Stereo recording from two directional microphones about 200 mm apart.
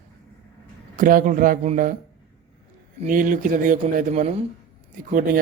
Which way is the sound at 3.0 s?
40° right (ahead or behind).